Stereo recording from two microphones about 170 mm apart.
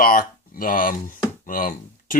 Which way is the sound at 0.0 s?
55° left (ahead or behind).